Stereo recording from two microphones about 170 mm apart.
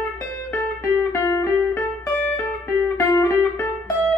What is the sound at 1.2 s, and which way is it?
Music, 15° left (ahead or behind).